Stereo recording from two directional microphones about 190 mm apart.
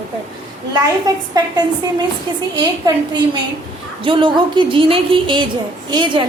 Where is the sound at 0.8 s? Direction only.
20° right (ahead or behind).